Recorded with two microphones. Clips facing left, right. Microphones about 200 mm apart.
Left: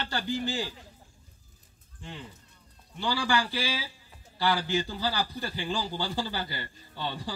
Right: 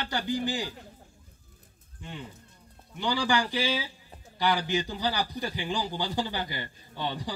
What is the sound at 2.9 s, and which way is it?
A man's voice, 15° right (ahead or behind).